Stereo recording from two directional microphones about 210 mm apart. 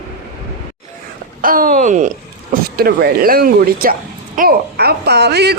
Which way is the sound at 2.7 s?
50° right (ahead or behind).